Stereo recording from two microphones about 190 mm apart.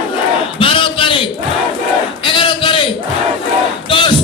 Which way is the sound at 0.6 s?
25° left (ahead or behind).